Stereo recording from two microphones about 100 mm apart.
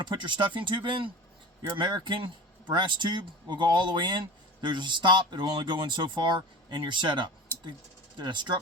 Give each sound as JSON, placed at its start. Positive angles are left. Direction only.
{"t": 0.0, "sound": "speech", "side_deg": -50}